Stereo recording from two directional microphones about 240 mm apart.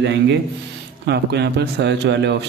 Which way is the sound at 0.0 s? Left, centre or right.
Right.